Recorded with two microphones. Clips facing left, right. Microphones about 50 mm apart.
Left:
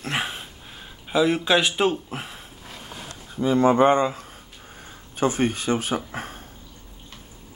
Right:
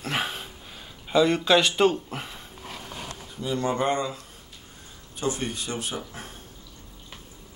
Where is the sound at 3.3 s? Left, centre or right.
Left.